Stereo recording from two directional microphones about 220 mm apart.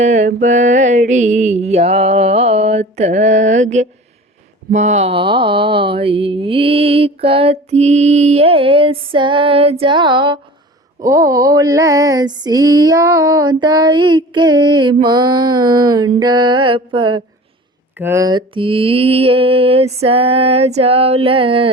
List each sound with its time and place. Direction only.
0.0 s mantra: 35° right (ahead or behind)
11.0 s a sound: 15° right (ahead or behind)
15.0 s mantra: 20° right (ahead or behind)